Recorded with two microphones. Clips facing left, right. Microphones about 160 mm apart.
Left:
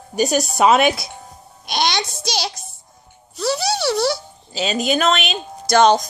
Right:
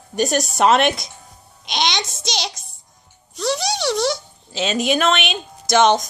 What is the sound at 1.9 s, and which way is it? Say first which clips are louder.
Speech: left 2 dB; 20° right (ahead or behind).